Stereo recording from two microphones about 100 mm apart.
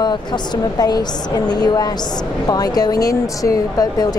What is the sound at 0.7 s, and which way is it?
Speech, 40° left (ahead or behind).